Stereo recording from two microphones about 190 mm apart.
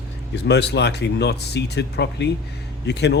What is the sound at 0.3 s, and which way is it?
Speech, 60° left (ahead or behind).